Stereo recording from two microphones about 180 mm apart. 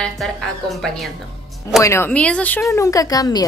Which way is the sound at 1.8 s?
15° left (ahead or behind).